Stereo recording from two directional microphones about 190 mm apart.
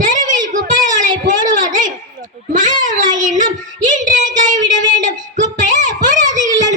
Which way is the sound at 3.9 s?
45° right (ahead or behind).